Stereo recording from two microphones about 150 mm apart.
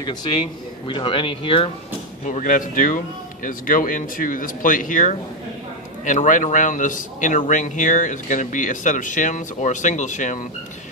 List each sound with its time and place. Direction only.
0.0 s speech: 35° left (ahead or behind)
2.2 s a man's voice: 60° left (ahead or behind)